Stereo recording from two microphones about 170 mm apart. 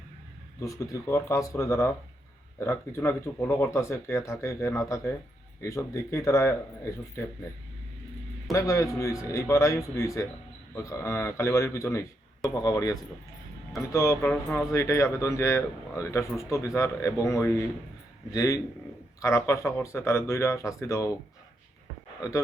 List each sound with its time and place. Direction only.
0.6 s a man's voice: 20° left (ahead or behind)
8.5 s a man's voice: 20° left (ahead or behind)